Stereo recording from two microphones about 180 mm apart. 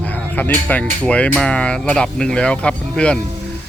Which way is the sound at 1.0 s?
5° left (ahead or behind).